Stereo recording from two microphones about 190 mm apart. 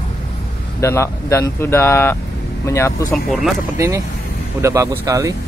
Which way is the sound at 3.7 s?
15° right (ahead or behind).